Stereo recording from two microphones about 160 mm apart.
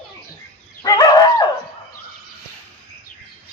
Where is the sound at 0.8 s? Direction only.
20° left (ahead or behind).